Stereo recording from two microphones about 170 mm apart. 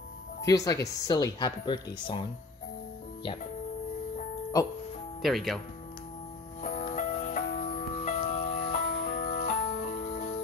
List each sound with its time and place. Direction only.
0.4 s speech: 20° left (ahead or behind)
5.2 s speech: centre (ahead or behind)
6.6 s music: 45° left (ahead or behind)